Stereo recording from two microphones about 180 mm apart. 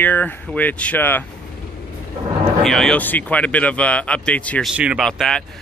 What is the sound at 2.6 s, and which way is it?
Speech, 5° left (ahead or behind).